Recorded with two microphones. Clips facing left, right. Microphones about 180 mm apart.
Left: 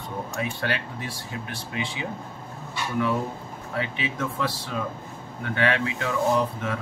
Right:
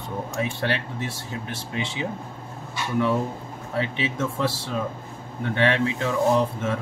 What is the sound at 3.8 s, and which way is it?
Speech, 25° right (ahead or behind).